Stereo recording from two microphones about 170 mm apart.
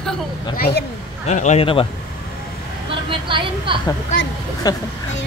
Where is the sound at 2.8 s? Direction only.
30° right (ahead or behind).